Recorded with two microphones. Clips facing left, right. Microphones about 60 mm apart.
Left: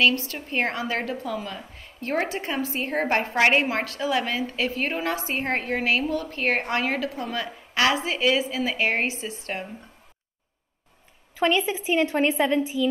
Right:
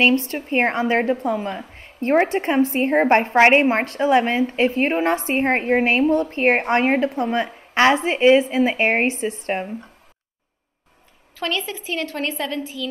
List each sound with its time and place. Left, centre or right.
0.0 s speech: right
11.3 s a woman's voice: centre